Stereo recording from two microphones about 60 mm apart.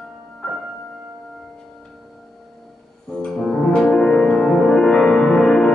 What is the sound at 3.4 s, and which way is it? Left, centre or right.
Music, centre.